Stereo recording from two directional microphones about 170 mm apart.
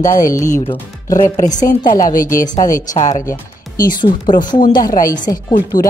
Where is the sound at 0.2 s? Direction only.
15° left (ahead or behind).